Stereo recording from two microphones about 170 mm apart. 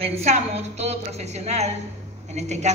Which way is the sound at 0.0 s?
40° right (ahead or behind).